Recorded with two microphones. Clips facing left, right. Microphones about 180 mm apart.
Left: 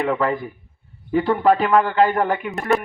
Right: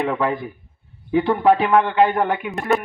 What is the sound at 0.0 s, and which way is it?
A man's voice, centre (ahead or behind).